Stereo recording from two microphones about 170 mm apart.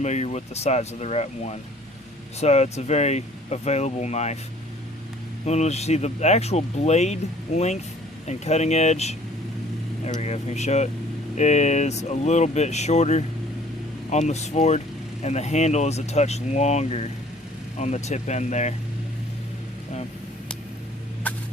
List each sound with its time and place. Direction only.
0.0 s speech: 40° left (ahead or behind)
5.5 s speech: 40° left (ahead or behind)
21.2 s a sound: 10° left (ahead or behind)